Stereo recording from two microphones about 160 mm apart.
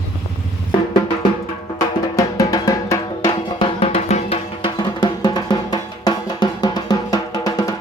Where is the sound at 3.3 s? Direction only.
35° left (ahead or behind).